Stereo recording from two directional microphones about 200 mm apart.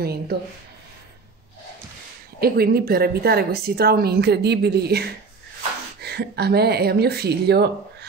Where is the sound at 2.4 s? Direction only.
50° right (ahead or behind).